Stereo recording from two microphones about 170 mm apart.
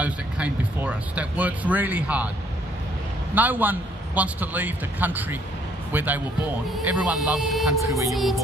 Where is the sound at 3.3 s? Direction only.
10° right (ahead or behind).